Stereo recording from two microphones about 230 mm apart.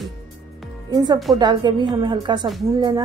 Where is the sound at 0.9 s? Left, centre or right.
Centre.